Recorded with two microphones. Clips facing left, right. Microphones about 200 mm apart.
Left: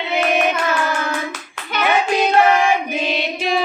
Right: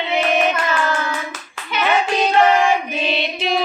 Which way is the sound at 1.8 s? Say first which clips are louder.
Left 1 dB; 10° left (ahead or behind).